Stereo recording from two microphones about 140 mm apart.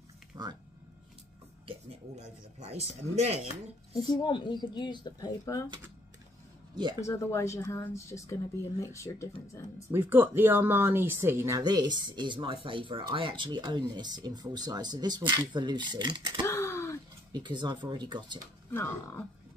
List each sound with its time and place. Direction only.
0.3 s a sound: 25° right (ahead or behind)
1.7 s speech: 50° right (ahead or behind)
4.1 s speech: 30° left (ahead or behind)
6.7 s speech: 35° right (ahead or behind)
7.1 s speech: 20° left (ahead or behind)
9.8 s speech: 15° right (ahead or behind)
11.6 s speech: 30° right (ahead or behind)
16.4 s a sound: 20° left (ahead or behind)
17.3 s speech: 30° right (ahead or behind)
18.7 s speech: 15° left (ahead or behind)